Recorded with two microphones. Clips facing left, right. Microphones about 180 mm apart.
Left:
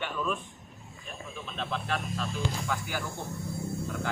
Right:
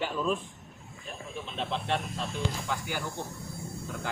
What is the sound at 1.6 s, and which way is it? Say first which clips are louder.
Speech: right 2 dB; 25° right (ahead or behind).